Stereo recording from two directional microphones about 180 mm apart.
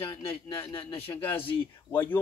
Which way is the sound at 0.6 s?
15° left (ahead or behind).